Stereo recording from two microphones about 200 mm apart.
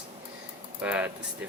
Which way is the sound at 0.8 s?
5° right (ahead or behind).